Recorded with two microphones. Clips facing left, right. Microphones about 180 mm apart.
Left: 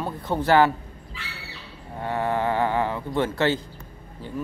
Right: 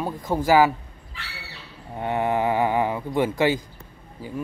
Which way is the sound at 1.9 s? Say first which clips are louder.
Right 2 dB; 20° right (ahead or behind).